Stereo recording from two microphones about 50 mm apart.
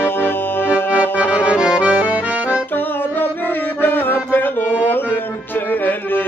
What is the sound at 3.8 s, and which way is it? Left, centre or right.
Music, left.